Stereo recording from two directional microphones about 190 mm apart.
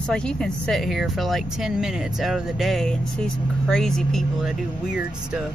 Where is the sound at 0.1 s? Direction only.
5° left (ahead or behind).